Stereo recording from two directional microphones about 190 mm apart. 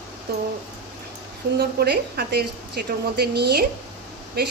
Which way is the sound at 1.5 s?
55° right (ahead or behind).